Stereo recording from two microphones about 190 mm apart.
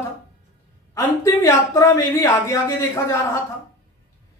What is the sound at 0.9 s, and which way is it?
Speech, 15° left (ahead or behind).